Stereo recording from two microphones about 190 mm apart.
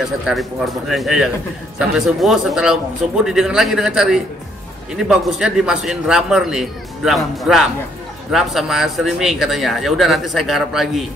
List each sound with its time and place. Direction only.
0.3 s a man's voice: centre (ahead or behind)